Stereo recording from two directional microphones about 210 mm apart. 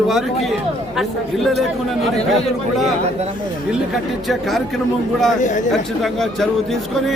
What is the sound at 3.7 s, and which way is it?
Speech, centre (ahead or behind).